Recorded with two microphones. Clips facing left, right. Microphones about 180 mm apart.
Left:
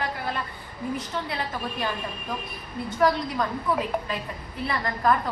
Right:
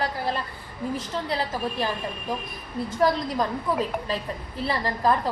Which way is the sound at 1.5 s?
30° right (ahead or behind).